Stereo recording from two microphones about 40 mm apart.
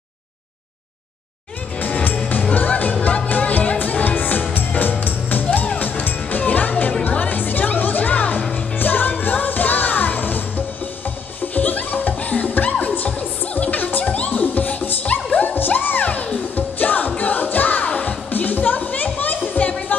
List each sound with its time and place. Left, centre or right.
2.5 s music: left
8.7 s music: left
11.5 s music: left
17.8 s music: left
18.3 s music: left